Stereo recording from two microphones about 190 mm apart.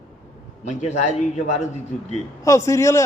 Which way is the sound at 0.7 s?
40° left (ahead or behind).